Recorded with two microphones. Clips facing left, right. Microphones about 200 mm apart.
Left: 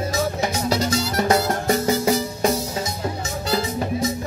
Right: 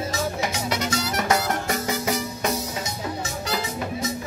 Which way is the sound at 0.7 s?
30° left (ahead or behind).